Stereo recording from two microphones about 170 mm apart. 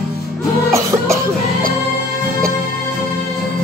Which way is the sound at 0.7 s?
20° right (ahead or behind).